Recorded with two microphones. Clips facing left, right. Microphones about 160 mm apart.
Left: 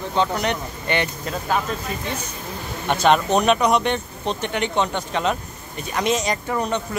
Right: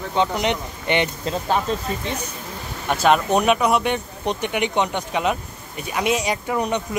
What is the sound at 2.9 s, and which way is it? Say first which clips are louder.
Speech: even; 5° right (ahead or behind).